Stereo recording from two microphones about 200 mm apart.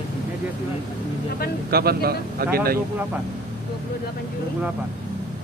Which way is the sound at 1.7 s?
50° right (ahead or behind).